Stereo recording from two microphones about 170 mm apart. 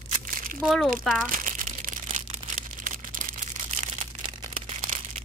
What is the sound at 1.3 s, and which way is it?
Crumpling, 55° right (ahead or behind).